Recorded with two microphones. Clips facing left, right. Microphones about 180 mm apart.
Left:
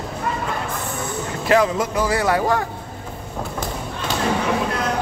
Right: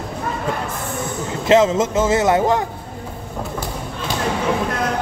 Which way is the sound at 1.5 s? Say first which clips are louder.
Right 4 dB; 20° right (ahead or behind).